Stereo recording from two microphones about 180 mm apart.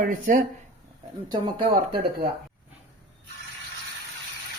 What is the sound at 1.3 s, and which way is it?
Speech, 25° right (ahead or behind).